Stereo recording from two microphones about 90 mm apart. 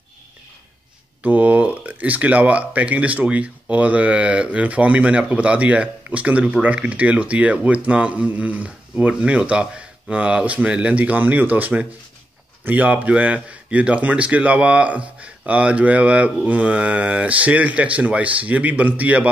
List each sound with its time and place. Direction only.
1.2 s speech: 15° right (ahead or behind)